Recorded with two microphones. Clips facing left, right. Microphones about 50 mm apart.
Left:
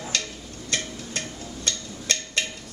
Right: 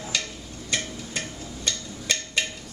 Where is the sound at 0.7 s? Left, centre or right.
Centre.